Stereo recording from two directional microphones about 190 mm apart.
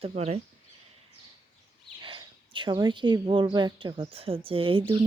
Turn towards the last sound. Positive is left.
turn(degrees=-25)  # may be behind; listen again after turning